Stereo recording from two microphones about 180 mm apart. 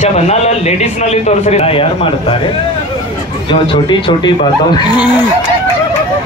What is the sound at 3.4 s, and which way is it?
Speech, 30° left (ahead or behind).